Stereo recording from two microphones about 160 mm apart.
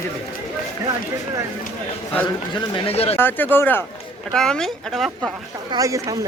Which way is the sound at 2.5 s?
30° left (ahead or behind).